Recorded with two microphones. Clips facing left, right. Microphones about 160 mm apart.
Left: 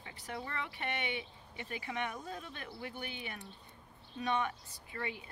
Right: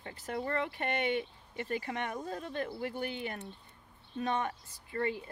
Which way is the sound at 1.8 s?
35° right (ahead or behind).